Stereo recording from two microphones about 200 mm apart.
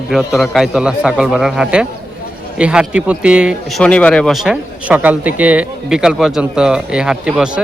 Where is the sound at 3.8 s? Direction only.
5° left (ahead or behind).